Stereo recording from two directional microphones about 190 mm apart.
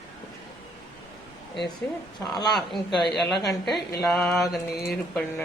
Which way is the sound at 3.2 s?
Centre (ahead or behind).